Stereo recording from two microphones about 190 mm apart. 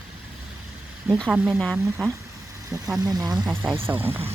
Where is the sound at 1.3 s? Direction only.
5° right (ahead or behind).